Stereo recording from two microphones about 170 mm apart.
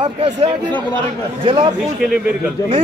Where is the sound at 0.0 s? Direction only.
35° right (ahead or behind).